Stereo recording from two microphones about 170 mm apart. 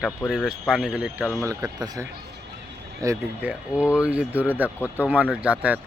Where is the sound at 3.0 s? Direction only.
10° right (ahead or behind).